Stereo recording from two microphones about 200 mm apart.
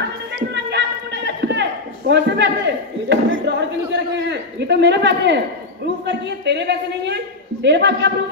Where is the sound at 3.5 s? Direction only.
60° right (ahead or behind).